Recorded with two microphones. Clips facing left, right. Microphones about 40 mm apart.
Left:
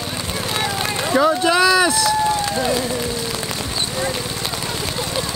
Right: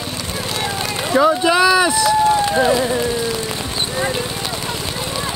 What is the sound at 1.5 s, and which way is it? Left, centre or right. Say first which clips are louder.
Run: right 1 dB; centre.